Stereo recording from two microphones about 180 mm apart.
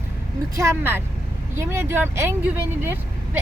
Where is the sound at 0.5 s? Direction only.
15° right (ahead or behind).